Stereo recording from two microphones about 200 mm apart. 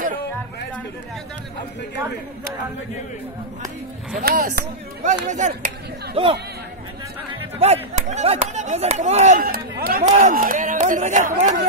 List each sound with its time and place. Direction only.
4.2 s speech: 50° right (ahead or behind)
7.5 s speech: 30° right (ahead or behind)